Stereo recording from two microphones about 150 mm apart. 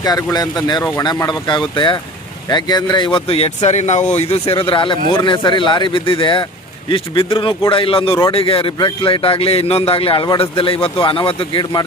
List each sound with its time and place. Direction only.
0.0 s a man's voice: 25° left (ahead or behind)